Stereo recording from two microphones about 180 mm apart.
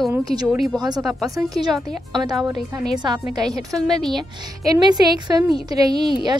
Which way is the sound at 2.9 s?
25° right (ahead or behind).